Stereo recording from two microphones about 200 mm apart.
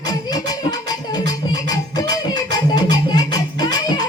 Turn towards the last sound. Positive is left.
turn(degrees=20)  # may be behind; listen again after turning